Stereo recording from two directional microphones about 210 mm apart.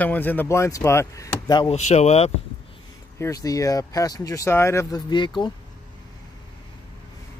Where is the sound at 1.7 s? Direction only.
35° left (ahead or behind).